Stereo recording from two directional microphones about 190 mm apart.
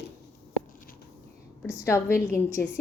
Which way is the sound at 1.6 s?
15° left (ahead or behind).